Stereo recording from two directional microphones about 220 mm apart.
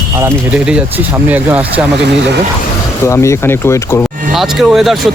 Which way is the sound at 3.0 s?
15° left (ahead or behind).